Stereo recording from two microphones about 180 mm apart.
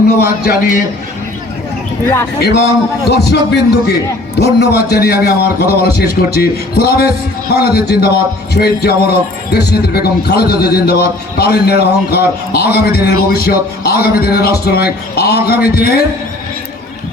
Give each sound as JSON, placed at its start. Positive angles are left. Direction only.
{"t": 0.2, "sound": "a man's voice", "side_deg": 60}
{"t": 2.4, "sound": "a man's voice", "side_deg": 65}